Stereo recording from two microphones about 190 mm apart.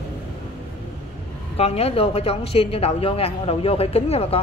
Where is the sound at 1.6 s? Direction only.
30° left (ahead or behind).